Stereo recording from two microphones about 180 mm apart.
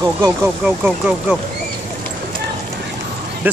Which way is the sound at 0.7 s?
5° right (ahead or behind).